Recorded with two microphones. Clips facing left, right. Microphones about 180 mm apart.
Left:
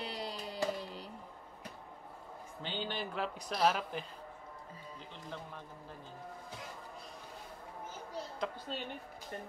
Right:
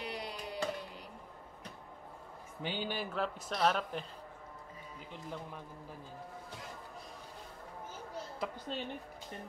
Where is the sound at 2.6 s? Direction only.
10° right (ahead or behind).